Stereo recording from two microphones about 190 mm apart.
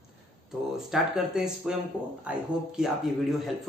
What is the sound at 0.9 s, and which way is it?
Speech, 5° right (ahead or behind).